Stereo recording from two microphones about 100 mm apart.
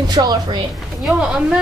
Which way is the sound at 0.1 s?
45° right (ahead or behind).